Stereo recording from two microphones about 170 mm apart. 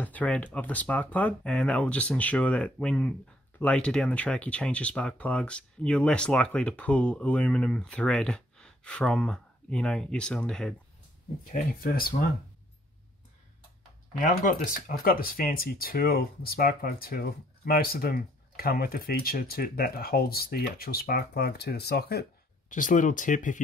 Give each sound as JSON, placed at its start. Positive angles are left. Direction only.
{"t": 0.0, "sound": "speech", "side_deg": 10}
{"t": 11.4, "sound": "speech", "side_deg": 60}
{"t": 14.1, "sound": "speech", "side_deg": 50}
{"t": 22.7, "sound": "speech", "side_deg": 50}